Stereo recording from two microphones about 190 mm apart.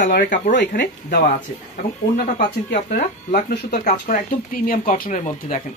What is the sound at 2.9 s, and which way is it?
Speech, 50° left (ahead or behind).